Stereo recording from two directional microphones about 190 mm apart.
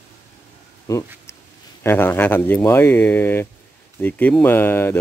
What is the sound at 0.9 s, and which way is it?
Speech, 20° left (ahead or behind).